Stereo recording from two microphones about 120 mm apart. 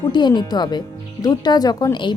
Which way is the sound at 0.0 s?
35° left (ahead or behind).